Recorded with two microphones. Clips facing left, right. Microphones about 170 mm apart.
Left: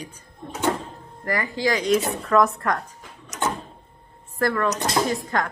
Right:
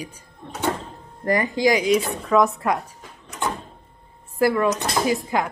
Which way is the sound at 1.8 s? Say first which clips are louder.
Right 1 dB; centre (ahead or behind).